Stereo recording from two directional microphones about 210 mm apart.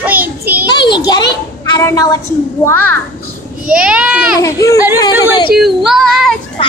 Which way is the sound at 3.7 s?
5° right (ahead or behind).